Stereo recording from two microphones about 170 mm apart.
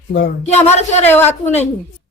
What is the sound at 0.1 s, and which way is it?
Speech, 70° left (ahead or behind).